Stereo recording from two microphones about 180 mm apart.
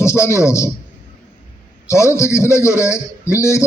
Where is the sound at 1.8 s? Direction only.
15° left (ahead or behind).